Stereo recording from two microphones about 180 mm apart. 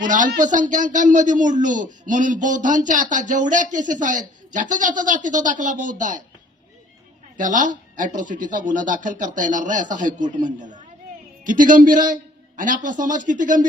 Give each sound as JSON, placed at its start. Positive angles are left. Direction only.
{"t": 0.0, "sound": "speech", "side_deg": -45}
{"t": 7.3, "sound": "a man's voice", "side_deg": -45}